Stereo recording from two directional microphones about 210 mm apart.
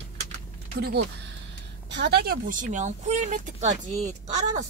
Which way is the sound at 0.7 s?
50° right (ahead or behind).